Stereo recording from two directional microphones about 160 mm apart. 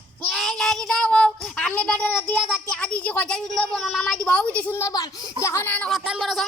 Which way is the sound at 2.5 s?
5° left (ahead or behind).